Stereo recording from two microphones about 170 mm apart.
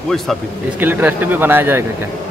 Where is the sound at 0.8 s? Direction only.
10° right (ahead or behind).